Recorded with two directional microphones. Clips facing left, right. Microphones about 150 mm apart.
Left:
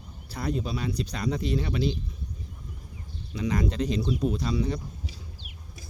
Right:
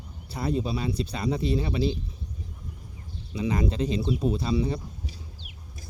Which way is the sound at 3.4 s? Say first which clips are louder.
Right 1 dB; 10° right (ahead or behind).